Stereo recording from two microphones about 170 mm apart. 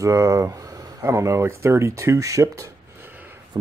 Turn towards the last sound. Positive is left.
turn(degrees=-10)  # may be behind; listen again after turning